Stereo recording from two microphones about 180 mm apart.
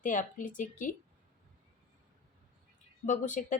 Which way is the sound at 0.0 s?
45° left (ahead or behind).